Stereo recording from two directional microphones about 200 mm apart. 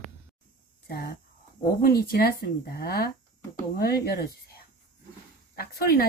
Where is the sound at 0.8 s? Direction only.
50° left (ahead or behind).